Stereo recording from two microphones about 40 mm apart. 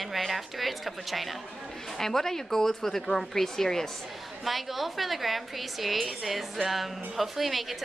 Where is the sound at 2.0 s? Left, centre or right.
Centre.